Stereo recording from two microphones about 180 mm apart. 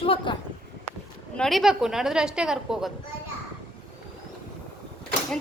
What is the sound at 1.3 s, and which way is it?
A woman's voice, centre (ahead or behind).